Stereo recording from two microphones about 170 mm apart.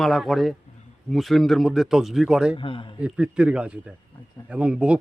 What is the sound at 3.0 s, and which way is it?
Speech, 5° right (ahead or behind).